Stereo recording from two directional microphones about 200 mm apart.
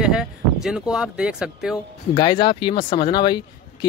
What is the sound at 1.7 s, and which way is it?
Speech, 20° left (ahead or behind).